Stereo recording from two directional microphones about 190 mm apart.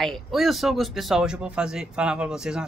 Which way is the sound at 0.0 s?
Centre (ahead or behind).